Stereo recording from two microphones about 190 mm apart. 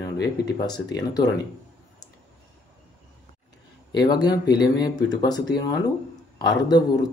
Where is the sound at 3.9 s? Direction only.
20° left (ahead or behind).